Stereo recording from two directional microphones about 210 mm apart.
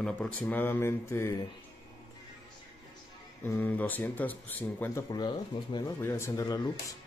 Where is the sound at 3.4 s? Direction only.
10° left (ahead or behind).